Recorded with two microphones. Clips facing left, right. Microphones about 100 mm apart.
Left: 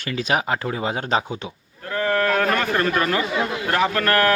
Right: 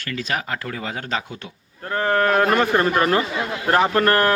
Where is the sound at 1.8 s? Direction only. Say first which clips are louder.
Right 2 dB; 30° right (ahead or behind).